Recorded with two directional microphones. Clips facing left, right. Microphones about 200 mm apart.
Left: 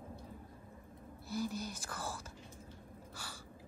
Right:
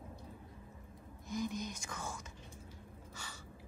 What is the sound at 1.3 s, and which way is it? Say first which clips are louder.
Speech: even; 5° left (ahead or behind).